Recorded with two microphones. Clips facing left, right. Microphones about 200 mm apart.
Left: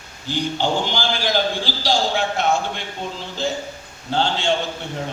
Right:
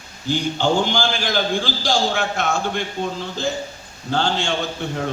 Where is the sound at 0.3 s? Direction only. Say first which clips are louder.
Right 2 dB; 50° right (ahead or behind).